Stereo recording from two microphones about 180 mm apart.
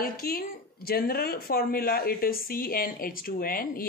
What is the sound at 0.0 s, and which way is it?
Speech, 55° left (ahead or behind).